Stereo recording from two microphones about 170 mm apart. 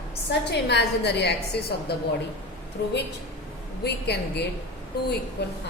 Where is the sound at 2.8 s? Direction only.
90° left.